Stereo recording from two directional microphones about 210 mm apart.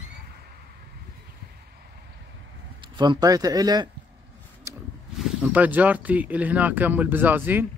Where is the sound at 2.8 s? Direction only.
20° right (ahead or behind).